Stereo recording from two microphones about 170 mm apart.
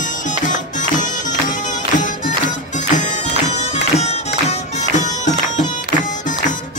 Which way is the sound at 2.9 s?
45° left (ahead or behind).